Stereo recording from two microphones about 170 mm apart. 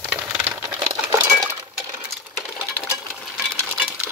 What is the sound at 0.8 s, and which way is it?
Chink, 15° right (ahead or behind).